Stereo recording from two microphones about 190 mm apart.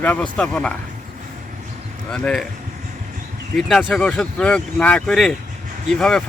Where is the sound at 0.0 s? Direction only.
5° left (ahead or behind).